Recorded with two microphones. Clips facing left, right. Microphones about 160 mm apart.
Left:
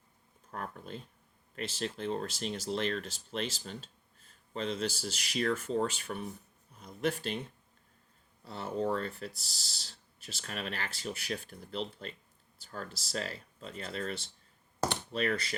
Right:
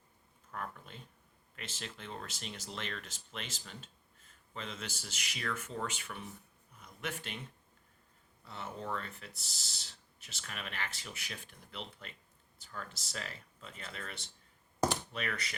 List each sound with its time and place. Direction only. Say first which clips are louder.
0.5 s speech: left 3 dB; 40° left (ahead or behind)
8.4 s speech: left 8 dB; 35° left (ahead or behind)